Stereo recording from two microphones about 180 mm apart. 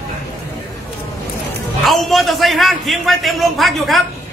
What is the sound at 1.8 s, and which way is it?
A man's voice, centre (ahead or behind).